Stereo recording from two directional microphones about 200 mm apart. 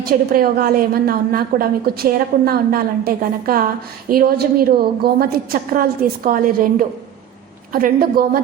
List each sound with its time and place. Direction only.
0.0 s a woman's voice: 50° right (ahead or behind)